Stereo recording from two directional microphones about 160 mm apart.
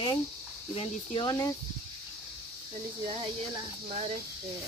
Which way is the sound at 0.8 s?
30° left (ahead or behind).